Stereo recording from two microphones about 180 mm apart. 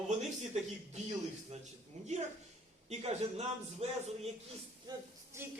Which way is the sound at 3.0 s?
35° right (ahead or behind).